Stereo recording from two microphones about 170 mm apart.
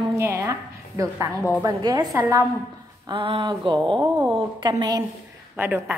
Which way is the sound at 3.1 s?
30° right (ahead or behind).